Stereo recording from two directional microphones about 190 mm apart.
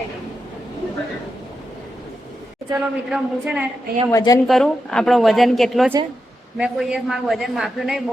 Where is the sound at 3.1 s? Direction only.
5° right (ahead or behind).